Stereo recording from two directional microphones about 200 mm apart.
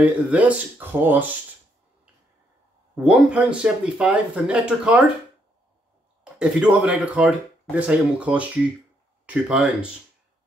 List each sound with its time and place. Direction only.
0.0 s speech: 5° right (ahead or behind)
3.0 s speech: 5° right (ahead or behind)
6.3 s speech: 5° right (ahead or behind)